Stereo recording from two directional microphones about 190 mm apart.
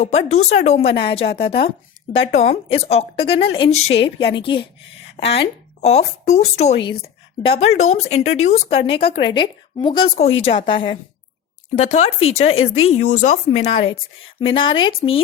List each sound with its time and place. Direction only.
0.0 s a woman's voice: 35° left (ahead or behind)
4.4 s a woman's voice: 25° left (ahead or behind)
12.5 s speech: 90° left
12.9 s a woman's voice: 40° left (ahead or behind)